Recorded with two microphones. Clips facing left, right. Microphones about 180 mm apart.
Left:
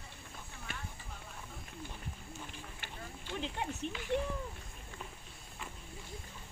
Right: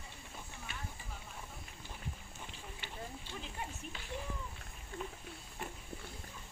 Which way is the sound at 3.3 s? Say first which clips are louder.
Left 6 dB; 80° left.